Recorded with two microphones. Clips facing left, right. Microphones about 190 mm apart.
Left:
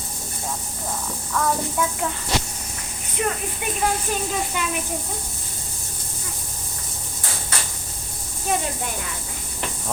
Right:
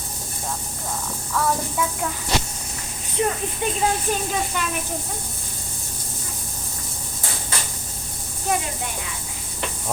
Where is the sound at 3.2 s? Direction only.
25° right (ahead or behind).